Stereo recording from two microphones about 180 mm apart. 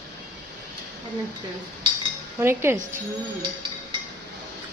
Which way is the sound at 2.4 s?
15° right (ahead or behind).